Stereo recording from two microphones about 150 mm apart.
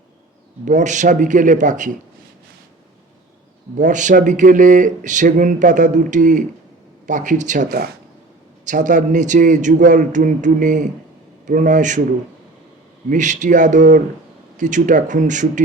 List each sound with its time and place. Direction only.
0.6 s speech: 55° right (ahead or behind)
3.8 s speech: 55° right (ahead or behind)
13.1 s speech: 55° right (ahead or behind)